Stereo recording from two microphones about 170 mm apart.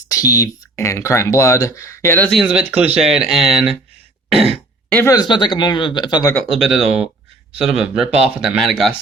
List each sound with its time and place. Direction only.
0.1 s speech: 20° left (ahead or behind)
2.5 s speech: 10° right (ahead or behind)
4.3 s throat clearing: 35° right (ahead or behind)
4.9 s speech: 10° left (ahead or behind)
5.1 s speech: 25° left (ahead or behind)
6.4 s speech: centre (ahead or behind)